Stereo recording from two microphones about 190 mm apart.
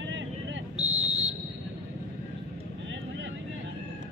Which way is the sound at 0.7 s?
35° right (ahead or behind).